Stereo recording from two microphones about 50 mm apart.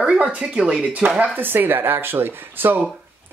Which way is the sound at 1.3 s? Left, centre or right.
Right.